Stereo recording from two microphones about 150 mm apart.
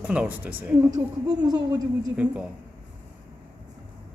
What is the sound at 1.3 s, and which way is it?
Speech, 25° right (ahead or behind).